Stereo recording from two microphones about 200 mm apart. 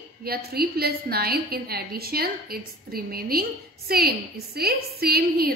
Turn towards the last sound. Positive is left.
turn(degrees=-50)  # may be behind; listen again after turning